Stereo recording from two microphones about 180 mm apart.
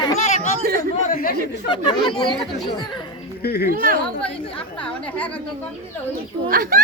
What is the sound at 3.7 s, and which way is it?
Speech, 50° right (ahead or behind).